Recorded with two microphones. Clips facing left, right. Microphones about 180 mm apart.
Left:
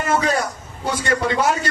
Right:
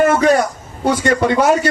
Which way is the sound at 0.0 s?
60° right (ahead or behind).